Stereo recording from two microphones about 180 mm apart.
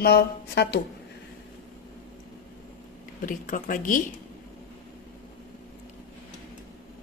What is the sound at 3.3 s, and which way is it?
Speech, 50° left (ahead or behind).